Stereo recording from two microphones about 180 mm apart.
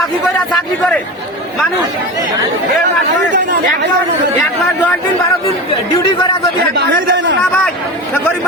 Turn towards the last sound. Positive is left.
turn(degrees=-80)